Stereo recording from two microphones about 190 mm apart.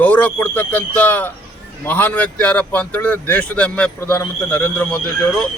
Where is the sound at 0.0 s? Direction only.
10° left (ahead or behind).